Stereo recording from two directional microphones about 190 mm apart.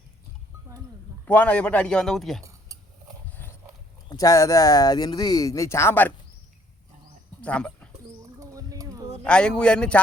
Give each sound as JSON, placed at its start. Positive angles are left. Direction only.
{"t": 1.2, "sound": "speech", "side_deg": 10}
{"t": 4.1, "sound": "speech", "side_deg": 20}
{"t": 7.4, "sound": "speech", "side_deg": 5}
{"t": 8.2, "sound": "bird", "side_deg": -20}
{"t": 9.2, "sound": "speech", "side_deg": 5}